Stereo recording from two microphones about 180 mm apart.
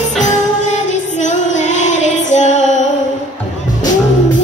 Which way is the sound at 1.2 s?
40° left (ahead or behind).